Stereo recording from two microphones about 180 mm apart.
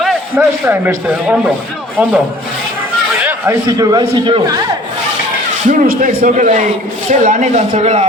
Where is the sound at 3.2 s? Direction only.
10° right (ahead or behind).